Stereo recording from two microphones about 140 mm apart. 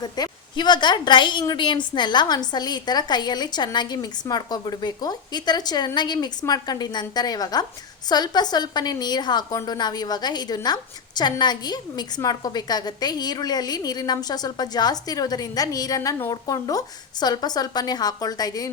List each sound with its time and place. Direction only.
0.0 s a woman's voice: 30° left (ahead or behind)